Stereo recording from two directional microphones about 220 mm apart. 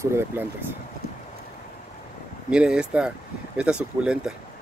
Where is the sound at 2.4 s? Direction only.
5° right (ahead or behind).